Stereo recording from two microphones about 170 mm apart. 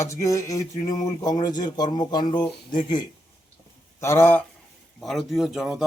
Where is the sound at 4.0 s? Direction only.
15° left (ahead or behind).